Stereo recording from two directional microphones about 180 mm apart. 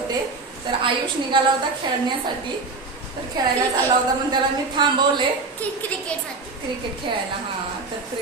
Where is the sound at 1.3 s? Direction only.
25° right (ahead or behind).